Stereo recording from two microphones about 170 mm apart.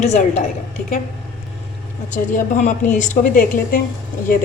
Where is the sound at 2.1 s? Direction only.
50° left (ahead or behind).